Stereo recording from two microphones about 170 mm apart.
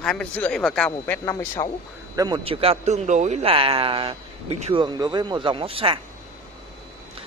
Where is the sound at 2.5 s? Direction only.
35° right (ahead or behind).